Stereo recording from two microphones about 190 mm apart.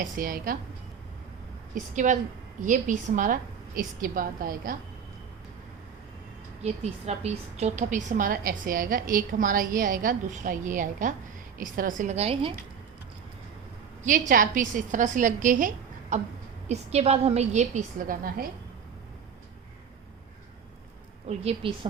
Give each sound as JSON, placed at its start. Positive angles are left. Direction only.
{"t": 0.0, "sound": "a woman's voice", "side_deg": -45}
{"t": 1.7, "sound": "a woman's voice", "side_deg": -40}
{"t": 6.6, "sound": "a woman's voice", "side_deg": -35}
{"t": 14.0, "sound": "a woman's voice", "side_deg": -45}
{"t": 21.2, "sound": "a woman's voice", "side_deg": -30}